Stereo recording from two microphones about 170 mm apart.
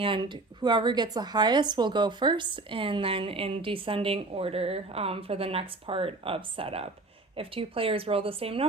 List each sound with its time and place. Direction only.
0.0 s speech: 25° right (ahead or behind)